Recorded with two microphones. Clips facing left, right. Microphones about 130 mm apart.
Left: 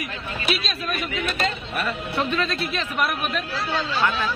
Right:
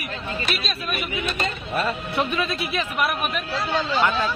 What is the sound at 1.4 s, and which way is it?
Speech, 25° right (ahead or behind).